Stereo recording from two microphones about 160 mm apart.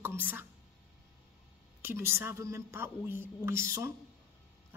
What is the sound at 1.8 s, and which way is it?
Speech, 15° right (ahead or behind).